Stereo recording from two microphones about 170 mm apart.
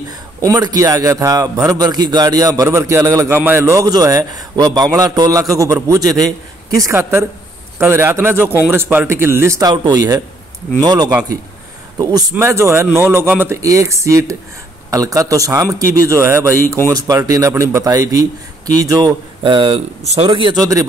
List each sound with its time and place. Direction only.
0.5 s a man's voice: 20° right (ahead or behind)